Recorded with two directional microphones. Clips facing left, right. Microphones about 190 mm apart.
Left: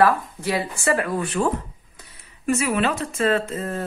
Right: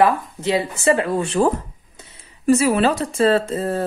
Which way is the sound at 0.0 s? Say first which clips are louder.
Right 2 dB; 20° right (ahead or behind).